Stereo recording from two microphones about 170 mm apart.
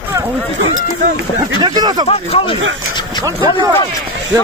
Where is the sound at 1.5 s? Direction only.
25° right (ahead or behind).